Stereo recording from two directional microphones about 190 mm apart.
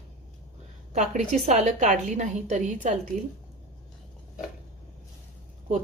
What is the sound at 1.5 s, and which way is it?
Speech, 40° right (ahead or behind).